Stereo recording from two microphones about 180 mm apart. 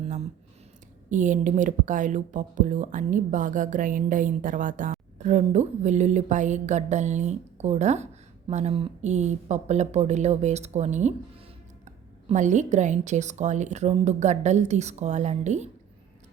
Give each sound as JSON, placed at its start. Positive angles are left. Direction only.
{"t": 1.1, "sound": "a woman's voice", "side_deg": -45}